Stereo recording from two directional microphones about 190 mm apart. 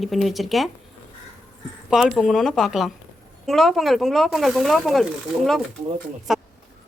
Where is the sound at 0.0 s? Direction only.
Centre (ahead or behind).